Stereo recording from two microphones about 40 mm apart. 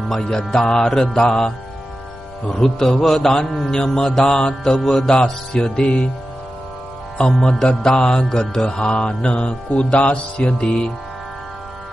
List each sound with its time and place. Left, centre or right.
0.1 s mantra: centre
3.0 s mantra: centre
5.5 s music: centre
7.2 s mantra: centre
7.9 s music: left